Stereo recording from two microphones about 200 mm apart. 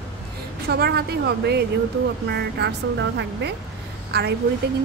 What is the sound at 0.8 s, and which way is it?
A woman's voice, 55° right (ahead or behind).